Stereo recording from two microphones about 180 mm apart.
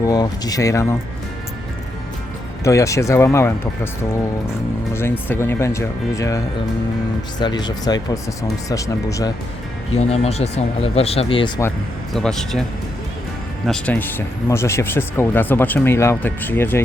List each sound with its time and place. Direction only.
0.0 s speech: 20° left (ahead or behind)
2.6 s speech: 15° left (ahead or behind)
4.9 s speech: 10° left (ahead or behind)
9.9 s speech: 35° left (ahead or behind)
12.1 s speech: centre (ahead or behind)
13.7 s speech: 5° left (ahead or behind)